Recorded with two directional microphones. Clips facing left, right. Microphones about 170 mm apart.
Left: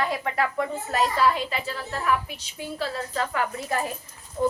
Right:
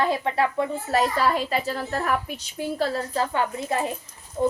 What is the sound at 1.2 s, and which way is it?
Speech, 40° right (ahead or behind).